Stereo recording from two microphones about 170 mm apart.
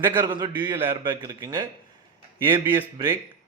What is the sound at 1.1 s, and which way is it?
Speech, 25° right (ahead or behind).